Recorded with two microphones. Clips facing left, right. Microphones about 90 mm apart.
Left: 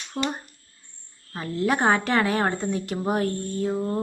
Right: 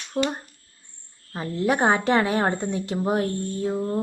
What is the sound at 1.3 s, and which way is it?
A woman's voice, 20° right (ahead or behind).